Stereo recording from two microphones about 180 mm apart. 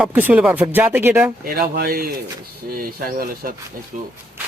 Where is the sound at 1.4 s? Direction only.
55° right (ahead or behind).